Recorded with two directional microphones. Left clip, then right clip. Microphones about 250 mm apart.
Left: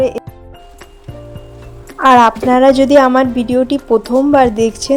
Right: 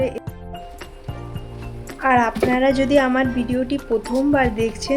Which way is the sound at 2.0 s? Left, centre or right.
Left.